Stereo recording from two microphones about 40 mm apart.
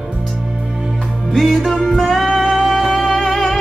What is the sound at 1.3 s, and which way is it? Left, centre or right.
Music, centre.